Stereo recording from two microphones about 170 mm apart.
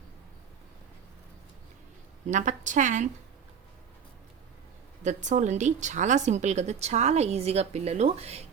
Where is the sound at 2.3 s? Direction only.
45° right (ahead or behind).